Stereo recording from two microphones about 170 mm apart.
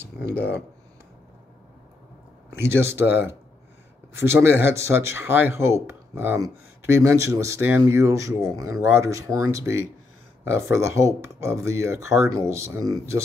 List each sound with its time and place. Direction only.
0.0 s speech: 15° right (ahead or behind)
2.6 s speech: 15° right (ahead or behind)
4.2 s speech: 15° right (ahead or behind)